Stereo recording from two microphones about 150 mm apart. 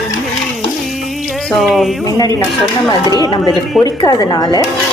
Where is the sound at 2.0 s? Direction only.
25° left (ahead or behind).